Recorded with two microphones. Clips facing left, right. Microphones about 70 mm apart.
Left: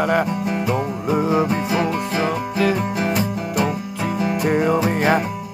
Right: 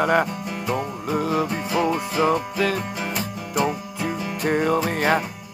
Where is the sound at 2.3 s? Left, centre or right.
Centre.